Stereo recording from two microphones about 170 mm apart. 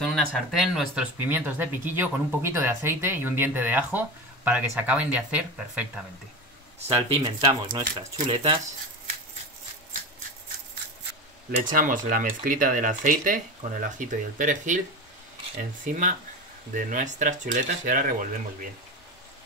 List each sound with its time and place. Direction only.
0.0 s speech: centre (ahead or behind)
6.9 s speech: 35° right (ahead or behind)
7.2 s speech: 25° right (ahead or behind)
11.5 s speech: 50° right (ahead or behind)
15.9 s speech: 50° right (ahead or behind)